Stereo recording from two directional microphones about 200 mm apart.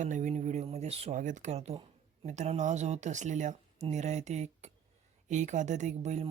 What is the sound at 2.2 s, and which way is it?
Speech, 35° right (ahead or behind).